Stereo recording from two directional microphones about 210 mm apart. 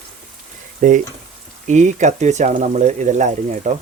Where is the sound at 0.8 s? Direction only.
40° right (ahead or behind).